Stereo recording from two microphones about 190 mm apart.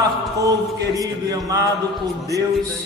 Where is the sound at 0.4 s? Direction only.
20° right (ahead or behind).